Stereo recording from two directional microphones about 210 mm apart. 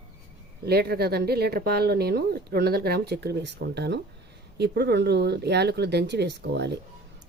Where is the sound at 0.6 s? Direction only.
50° right (ahead or behind).